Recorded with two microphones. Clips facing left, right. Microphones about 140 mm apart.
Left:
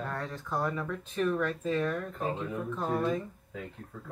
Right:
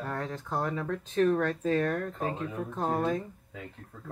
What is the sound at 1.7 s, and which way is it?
Speech, 45° right (ahead or behind).